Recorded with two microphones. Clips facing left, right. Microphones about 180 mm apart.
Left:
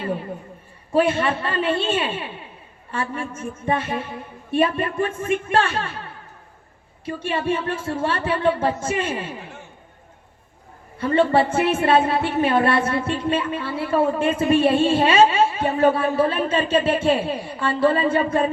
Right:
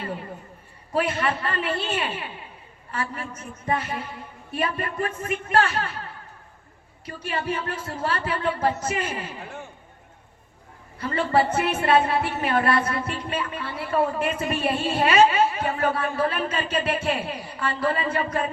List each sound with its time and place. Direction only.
0.9 s a woman's voice: 25° left (ahead or behind)
7.0 s a woman's voice: 25° left (ahead or behind)
10.9 s a woman's voice: 25° left (ahead or behind)